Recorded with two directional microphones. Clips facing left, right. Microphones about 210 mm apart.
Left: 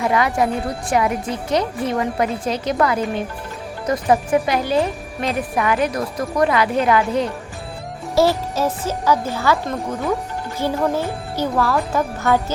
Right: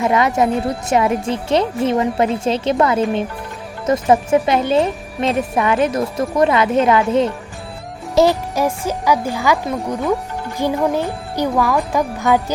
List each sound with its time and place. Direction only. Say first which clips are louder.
0.0 s speech: right 3 dB; 20° right (ahead or behind)